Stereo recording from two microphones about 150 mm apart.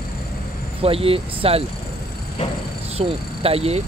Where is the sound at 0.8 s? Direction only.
40° right (ahead or behind).